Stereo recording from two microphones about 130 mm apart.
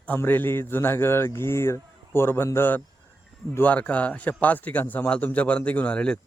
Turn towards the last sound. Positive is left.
turn(degrees=10)  # may be behind; listen again after turning